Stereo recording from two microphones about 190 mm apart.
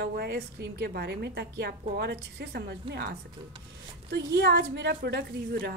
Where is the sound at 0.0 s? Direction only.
55° right (ahead or behind).